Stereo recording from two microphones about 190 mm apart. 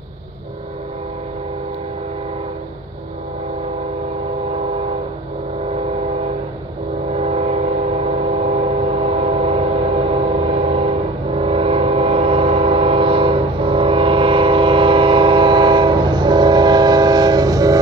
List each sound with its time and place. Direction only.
7.1 s train: 35° right (ahead or behind); by 17.7 s 20° right (ahead or behind)